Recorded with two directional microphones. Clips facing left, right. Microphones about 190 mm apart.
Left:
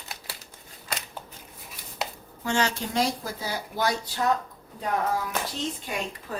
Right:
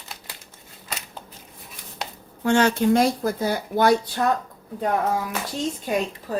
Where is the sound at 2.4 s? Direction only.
55° right (ahead or behind).